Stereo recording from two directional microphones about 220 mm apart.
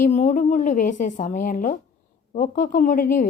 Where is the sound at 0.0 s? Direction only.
35° left (ahead or behind).